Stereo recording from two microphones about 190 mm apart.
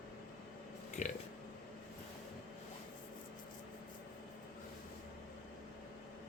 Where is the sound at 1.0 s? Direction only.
40° left (ahead or behind).